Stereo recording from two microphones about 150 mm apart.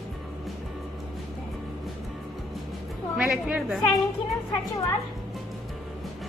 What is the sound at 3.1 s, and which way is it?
Speech, 5° right (ahead or behind).